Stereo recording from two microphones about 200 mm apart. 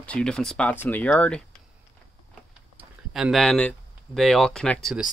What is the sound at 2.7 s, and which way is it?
Speech, centre (ahead or behind).